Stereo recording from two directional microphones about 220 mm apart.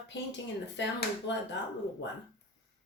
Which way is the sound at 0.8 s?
55° left (ahead or behind).